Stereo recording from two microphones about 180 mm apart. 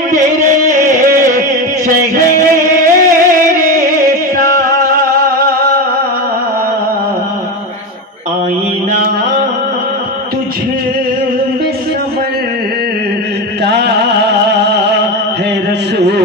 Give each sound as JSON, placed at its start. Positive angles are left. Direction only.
{"t": 0.7, "sound": "music", "side_deg": -45}
{"t": 5.1, "sound": "music", "side_deg": -55}
{"t": 13.7, "sound": "music", "side_deg": -70}